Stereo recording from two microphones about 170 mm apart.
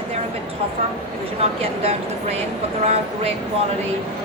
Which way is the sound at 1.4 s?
35° right (ahead or behind).